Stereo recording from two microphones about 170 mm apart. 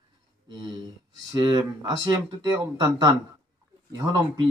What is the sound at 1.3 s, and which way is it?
Speech, 25° right (ahead or behind).